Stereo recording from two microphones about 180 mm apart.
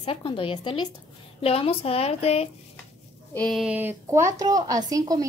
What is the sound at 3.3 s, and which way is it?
A woman's voice, 5° left (ahead or behind).